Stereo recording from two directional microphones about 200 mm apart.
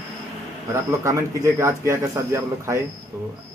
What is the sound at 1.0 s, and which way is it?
A man's voice, 15° right (ahead or behind).